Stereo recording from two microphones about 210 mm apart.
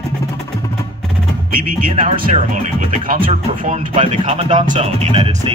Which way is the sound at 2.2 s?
35° right (ahead or behind).